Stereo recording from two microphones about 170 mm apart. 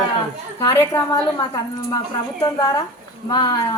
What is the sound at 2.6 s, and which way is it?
Speech, 20° left (ahead or behind).